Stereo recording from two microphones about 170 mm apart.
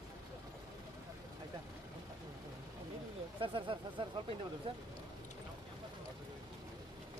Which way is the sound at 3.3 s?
30° right (ahead or behind).